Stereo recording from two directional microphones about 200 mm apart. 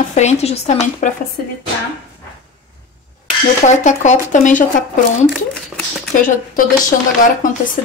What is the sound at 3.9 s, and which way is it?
Speech, 35° left (ahead or behind).